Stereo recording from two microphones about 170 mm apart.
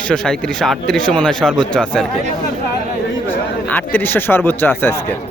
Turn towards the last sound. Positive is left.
turn(degrees=10)  # may be behind; listen again after turning